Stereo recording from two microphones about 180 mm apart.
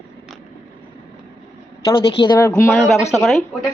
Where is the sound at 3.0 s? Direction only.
15° left (ahead or behind).